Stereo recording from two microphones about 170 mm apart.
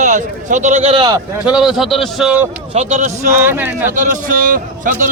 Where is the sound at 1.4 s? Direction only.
Centre (ahead or behind).